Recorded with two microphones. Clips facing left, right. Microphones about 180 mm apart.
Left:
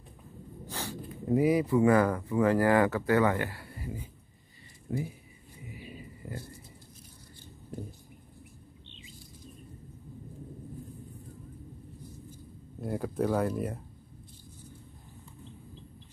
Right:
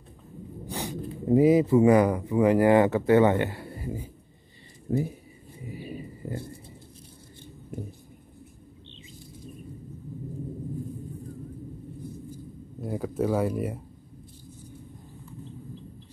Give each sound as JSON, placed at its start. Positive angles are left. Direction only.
{"t": 0.7, "sound": "speech", "side_deg": -15}
{"t": 4.9, "sound": "speech", "side_deg": -40}
{"t": 5.7, "sound": "a sound", "side_deg": -30}
{"t": 12.8, "sound": "speech", "side_deg": 0}